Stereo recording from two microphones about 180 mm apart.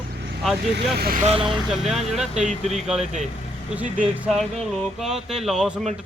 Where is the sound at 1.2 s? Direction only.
30° right (ahead or behind).